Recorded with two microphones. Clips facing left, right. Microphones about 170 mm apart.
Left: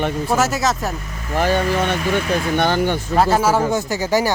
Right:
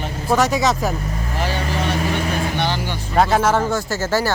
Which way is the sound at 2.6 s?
50° left (ahead or behind).